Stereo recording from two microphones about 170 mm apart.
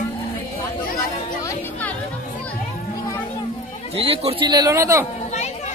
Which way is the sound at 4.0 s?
35° right (ahead or behind).